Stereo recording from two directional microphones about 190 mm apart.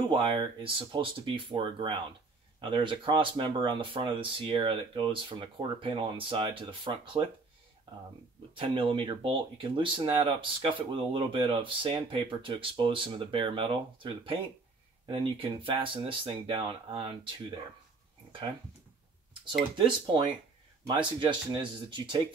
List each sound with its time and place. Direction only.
0.1 s speech: 25° right (ahead or behind)
8.5 s speech: 25° right (ahead or behind)
20.8 s speech: 25° right (ahead or behind)